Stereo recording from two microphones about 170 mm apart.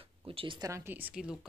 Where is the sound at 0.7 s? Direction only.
15° right (ahead or behind).